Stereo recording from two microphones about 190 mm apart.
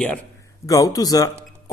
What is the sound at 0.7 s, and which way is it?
Speech, 20° left (ahead or behind).